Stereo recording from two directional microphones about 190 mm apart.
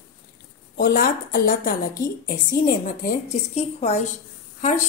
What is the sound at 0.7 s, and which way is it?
A woman's voice, 50° left (ahead or behind).